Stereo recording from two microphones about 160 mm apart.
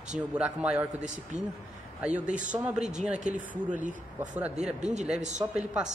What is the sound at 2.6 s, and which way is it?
Speech, 5° right (ahead or behind).